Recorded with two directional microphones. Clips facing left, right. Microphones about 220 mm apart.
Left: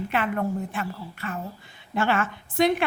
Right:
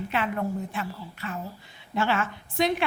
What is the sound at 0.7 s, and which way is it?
A woman's voice, 50° left (ahead or behind).